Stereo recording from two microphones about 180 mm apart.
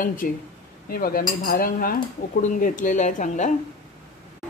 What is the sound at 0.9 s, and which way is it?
Cutlery, 55° left (ahead or behind).